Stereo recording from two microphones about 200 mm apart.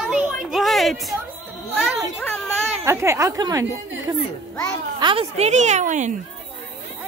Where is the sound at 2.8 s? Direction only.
15° right (ahead or behind); by 6.1 s 40° right (ahead or behind).